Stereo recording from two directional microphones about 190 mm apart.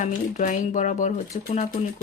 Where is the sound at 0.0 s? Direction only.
40° left (ahead or behind).